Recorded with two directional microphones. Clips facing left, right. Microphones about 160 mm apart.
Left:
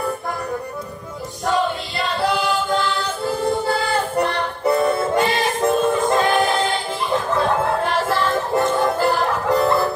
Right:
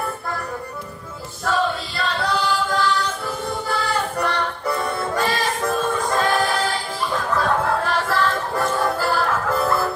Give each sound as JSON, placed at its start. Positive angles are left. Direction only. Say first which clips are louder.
{"t": 1.4, "sound": "choir", "louder": "left 1 dB", "side_deg": 20}